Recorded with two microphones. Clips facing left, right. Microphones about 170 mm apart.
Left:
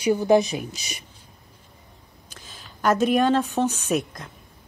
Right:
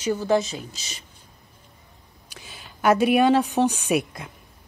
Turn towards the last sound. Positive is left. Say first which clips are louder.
# right 1 dB
turn(degrees=-10)  # may be behind; listen again after turning